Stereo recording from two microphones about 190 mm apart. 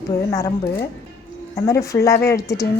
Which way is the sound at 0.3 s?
15° left (ahead or behind).